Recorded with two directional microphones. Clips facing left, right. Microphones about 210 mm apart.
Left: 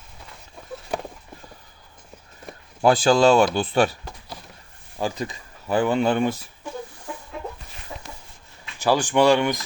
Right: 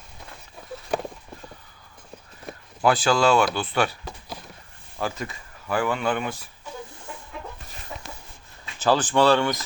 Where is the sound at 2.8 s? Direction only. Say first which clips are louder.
Left 4 dB; 30° left (ahead or behind).